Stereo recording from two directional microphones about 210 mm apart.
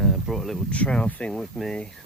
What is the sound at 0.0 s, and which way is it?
Speech, centre (ahead or behind).